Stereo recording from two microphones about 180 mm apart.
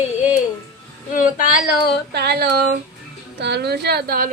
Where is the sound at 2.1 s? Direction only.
65° right (ahead or behind).